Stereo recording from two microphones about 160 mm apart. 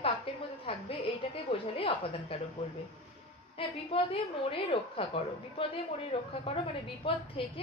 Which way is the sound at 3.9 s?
35° left (ahead or behind).